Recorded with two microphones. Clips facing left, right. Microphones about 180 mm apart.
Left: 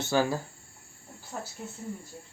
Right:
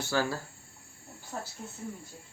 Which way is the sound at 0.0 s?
20° left (ahead or behind).